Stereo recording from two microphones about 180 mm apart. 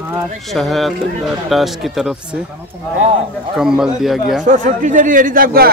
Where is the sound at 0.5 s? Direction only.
Centre (ahead or behind).